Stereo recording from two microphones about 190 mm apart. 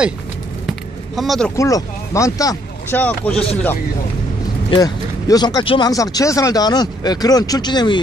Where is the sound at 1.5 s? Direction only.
15° left (ahead or behind).